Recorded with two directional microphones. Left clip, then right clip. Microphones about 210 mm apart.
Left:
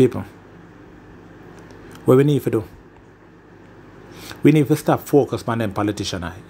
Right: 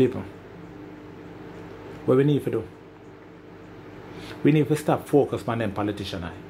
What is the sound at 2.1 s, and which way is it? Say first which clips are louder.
Speech: left 6 dB; 30° left (ahead or behind).